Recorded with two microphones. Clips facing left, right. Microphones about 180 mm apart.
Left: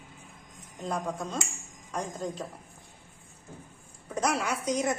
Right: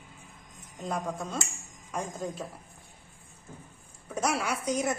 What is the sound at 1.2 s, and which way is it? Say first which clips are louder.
A woman's voice: left 1 dB; 5° right (ahead or behind).